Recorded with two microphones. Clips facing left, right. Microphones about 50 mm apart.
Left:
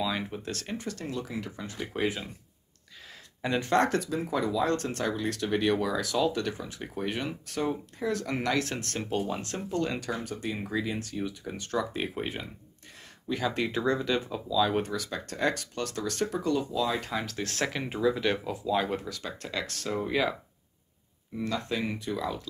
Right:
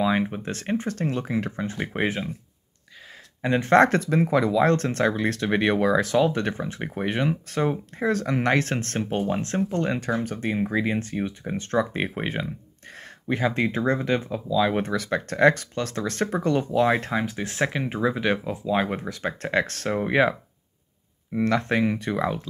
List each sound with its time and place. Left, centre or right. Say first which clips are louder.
0.0 s speech: right 8 dB; right
3.4 s speech: right 6 dB; right
3.7 s speech: right 9 dB; right
13.3 s speech: right 5 dB; right
15.0 s speech: right 10 dB; right
17.1 s speech: right 6 dB; right
21.4 s speech: right 9 dB; right